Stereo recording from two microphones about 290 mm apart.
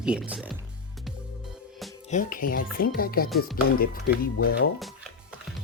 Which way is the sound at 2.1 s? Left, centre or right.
Left.